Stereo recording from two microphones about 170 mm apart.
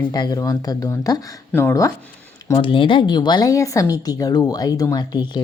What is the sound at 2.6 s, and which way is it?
Speech, 30° left (ahead or behind).